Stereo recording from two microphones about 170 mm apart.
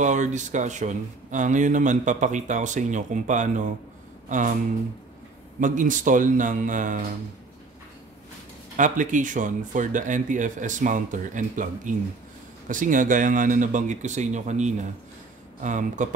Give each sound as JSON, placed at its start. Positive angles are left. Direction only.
{"t": 0.0, "sound": "speech", "side_deg": -45}
{"t": 5.6, "sound": "speech", "side_deg": -50}
{"t": 8.7, "sound": "speech", "side_deg": -50}